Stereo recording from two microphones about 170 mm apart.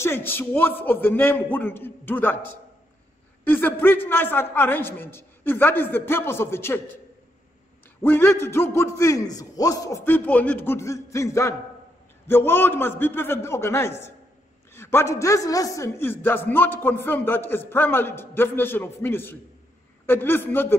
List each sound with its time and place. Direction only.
0.0 s a man's voice: 15° left (ahead or behind)
8.0 s a man's voice: 15° left (ahead or behind)